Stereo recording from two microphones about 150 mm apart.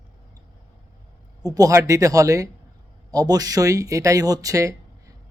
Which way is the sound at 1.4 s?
25° right (ahead or behind).